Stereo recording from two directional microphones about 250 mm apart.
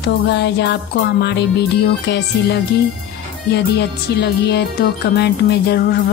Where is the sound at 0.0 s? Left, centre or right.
Left.